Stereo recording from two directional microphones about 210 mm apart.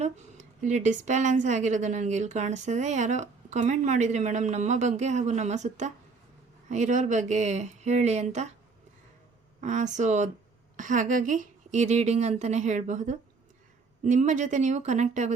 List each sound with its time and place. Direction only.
0.0 s a woman's voice: 35° right (ahead or behind)
9.6 s a woman's voice: 35° right (ahead or behind)